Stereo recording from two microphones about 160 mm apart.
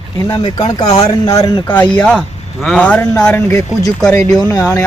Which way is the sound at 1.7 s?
10° left (ahead or behind).